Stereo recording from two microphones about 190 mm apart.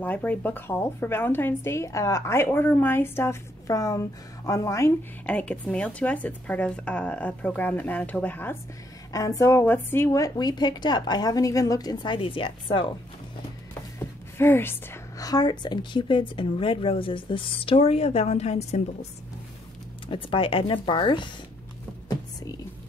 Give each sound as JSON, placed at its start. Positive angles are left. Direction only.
{"t": 0.0, "sound": "a woman's voice", "side_deg": 10}
{"t": 13.9, "sound": "a woman's voice", "side_deg": 10}
{"t": 20.1, "sound": "a woman's voice", "side_deg": 25}